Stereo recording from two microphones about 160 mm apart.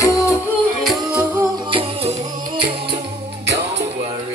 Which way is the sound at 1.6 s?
35° right (ahead or behind).